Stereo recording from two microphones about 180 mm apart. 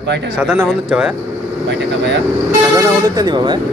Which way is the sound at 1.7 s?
70° right (ahead or behind).